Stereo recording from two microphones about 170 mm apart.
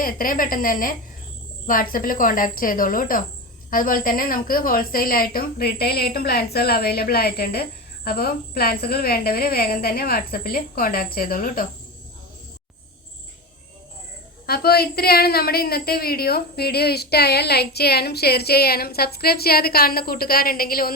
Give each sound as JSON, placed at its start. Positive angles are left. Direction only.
{"t": 0.0, "sound": "a woman's voice", "side_deg": 55}
{"t": 14.4, "sound": "a woman's voice", "side_deg": 65}